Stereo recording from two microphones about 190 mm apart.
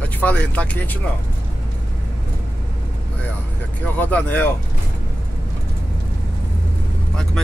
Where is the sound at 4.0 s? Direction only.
10° left (ahead or behind).